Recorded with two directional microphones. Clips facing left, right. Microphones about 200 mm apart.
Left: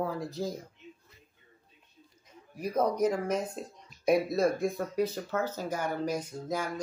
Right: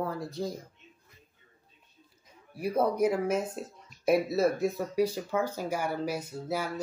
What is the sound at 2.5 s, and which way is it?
Speech, 10° right (ahead or behind).